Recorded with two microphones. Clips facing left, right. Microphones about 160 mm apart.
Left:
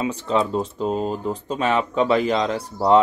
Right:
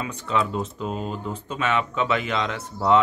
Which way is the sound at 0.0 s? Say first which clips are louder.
Left 4 dB; 30° left (ahead or behind).